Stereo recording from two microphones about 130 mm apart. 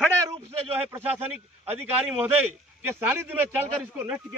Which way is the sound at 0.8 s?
15° right (ahead or behind).